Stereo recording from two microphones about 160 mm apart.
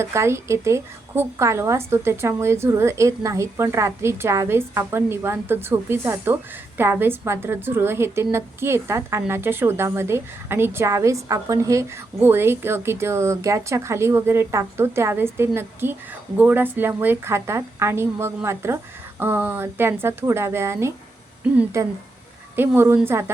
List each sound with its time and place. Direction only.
0.0 s a woman's voice: 15° right (ahead or behind)